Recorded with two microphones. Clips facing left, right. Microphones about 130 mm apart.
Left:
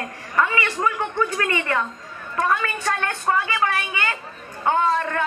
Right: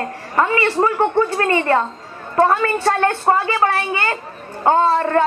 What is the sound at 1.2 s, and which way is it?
A woman's voice, 40° right (ahead or behind).